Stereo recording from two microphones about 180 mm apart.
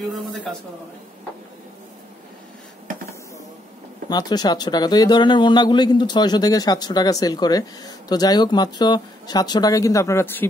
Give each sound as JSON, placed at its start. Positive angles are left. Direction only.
{"t": 0.1, "sound": "speech", "side_deg": 5}
{"t": 4.1, "sound": "speech", "side_deg": 20}